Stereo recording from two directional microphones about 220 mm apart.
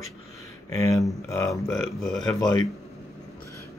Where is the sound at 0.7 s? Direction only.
15° left (ahead or behind).